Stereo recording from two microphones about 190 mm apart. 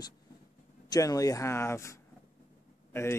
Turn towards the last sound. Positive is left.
turn(degrees=15)  # may be behind; listen again after turning